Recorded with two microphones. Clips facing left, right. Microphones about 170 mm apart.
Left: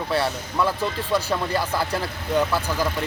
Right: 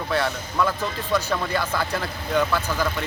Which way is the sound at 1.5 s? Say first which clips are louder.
Left 1 dB; 35° left (ahead or behind).